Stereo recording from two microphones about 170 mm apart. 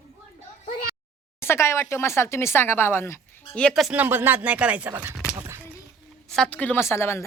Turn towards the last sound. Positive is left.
turn(degrees=15)  # may be behind; listen again after turning